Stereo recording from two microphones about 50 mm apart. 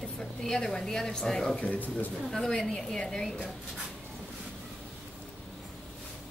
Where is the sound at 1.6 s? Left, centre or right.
Left.